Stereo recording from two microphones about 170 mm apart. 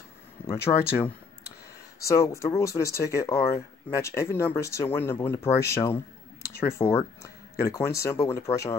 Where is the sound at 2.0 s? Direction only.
20° left (ahead or behind).